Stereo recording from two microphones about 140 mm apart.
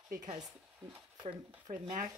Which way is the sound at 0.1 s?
30° right (ahead or behind).